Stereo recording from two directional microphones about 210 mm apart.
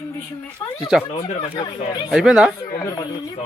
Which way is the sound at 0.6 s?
15° left (ahead or behind).